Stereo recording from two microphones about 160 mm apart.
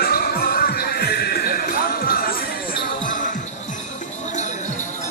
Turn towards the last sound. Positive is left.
turn(degrees=55)  # may be behind; listen again after turning